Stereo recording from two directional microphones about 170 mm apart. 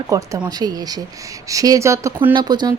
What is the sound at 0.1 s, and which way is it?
Speech, 20° right (ahead or behind).